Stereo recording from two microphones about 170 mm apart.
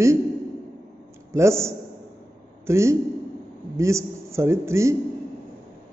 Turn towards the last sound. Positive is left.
turn(degrees=-15)  # may be behind; listen again after turning